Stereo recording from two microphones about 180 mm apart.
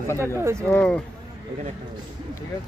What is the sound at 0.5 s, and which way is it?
Speech, 5° left (ahead or behind).